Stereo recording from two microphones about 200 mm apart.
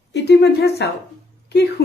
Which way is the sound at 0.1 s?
55° left (ahead or behind).